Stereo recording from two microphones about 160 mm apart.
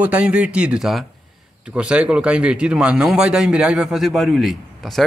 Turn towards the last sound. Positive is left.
turn(degrees=0)  # may be behind; listen again after turning